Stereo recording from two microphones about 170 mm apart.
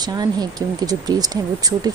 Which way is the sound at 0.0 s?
25° right (ahead or behind).